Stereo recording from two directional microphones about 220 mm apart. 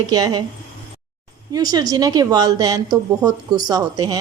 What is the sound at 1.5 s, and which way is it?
A woman's voice, 15° right (ahead or behind).